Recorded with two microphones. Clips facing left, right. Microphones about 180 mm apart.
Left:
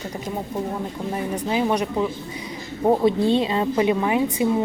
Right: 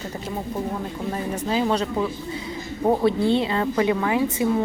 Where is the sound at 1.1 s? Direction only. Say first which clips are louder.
Left 1 dB; 15° left (ahead or behind).